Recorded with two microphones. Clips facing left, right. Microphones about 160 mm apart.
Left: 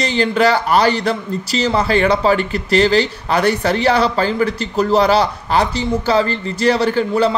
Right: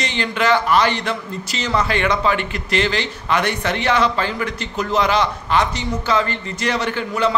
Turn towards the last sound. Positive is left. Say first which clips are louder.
# left 5 dB
turn(degrees=35)  # may be behind; listen again after turning